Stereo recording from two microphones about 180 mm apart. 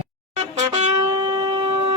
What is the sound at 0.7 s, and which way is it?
Wind instrument, 25° right (ahead or behind).